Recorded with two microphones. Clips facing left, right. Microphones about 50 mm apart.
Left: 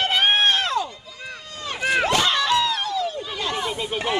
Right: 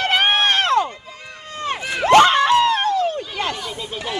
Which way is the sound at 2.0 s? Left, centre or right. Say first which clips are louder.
Right 8 dB; right.